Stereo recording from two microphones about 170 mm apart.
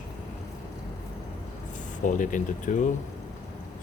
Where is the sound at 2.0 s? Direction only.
50° left (ahead or behind).